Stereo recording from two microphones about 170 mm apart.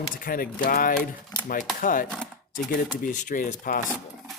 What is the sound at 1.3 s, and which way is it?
Speech, 25° left (ahead or behind).